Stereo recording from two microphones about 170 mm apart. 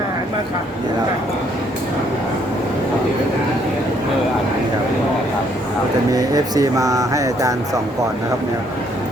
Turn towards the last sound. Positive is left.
turn(degrees=-20)  # may be behind; listen again after turning